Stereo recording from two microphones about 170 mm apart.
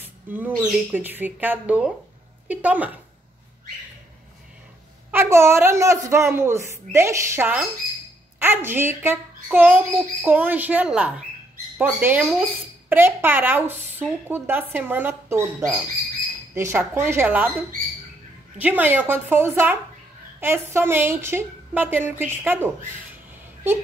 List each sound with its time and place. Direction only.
0.0 s bird: 10° right (ahead or behind)
0.6 s speech: 10° right (ahead or behind)
5.1 s speech: 15° right (ahead or behind)
18.6 s speech: 10° right (ahead or behind)